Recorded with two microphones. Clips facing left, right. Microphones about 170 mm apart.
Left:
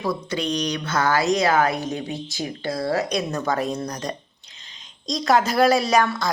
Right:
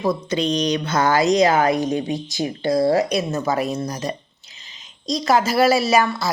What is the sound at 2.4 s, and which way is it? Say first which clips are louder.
Speech: right 8 dB; 35° right (ahead or behind).